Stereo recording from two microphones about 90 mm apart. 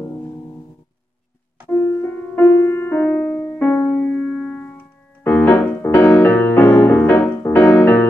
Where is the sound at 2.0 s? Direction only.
20° left (ahead or behind).